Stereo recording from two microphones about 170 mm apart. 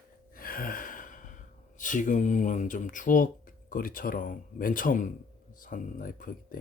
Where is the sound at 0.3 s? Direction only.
55° left (ahead or behind).